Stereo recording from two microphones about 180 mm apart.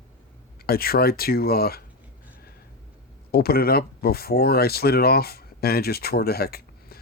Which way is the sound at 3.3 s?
60° left (ahead or behind).